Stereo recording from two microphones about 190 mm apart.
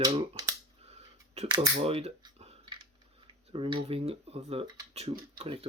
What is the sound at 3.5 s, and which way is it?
Speech, 25° right (ahead or behind).